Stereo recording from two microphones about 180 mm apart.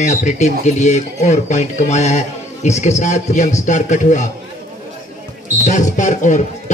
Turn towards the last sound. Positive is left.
turn(degrees=45)  # may be behind; listen again after turning